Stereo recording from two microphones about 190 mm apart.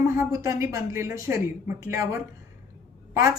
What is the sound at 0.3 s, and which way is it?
A woman's voice, 20° right (ahead or behind).